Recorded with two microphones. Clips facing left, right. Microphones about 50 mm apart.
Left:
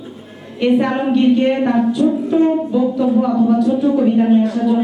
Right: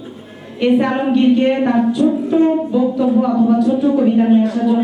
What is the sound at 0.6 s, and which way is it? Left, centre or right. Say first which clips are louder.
A woman's voice: right 1 dB; right.